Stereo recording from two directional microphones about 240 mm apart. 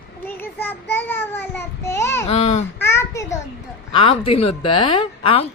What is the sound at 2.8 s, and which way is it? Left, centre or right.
Child singing, centre.